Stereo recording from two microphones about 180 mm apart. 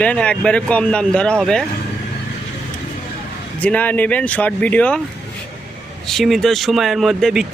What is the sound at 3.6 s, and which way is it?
Speech, 10° left (ahead or behind).